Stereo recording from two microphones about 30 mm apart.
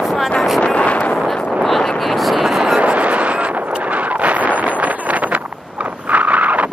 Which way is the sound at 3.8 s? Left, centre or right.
Right.